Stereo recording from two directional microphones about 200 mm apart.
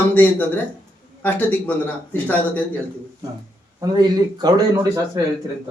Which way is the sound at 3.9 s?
20° right (ahead or behind).